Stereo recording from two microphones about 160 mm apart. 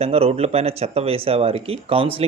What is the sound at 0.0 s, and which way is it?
Speech, 40° right (ahead or behind).